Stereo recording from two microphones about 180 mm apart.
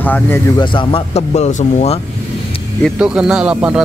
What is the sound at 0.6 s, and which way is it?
Speech, 30° left (ahead or behind).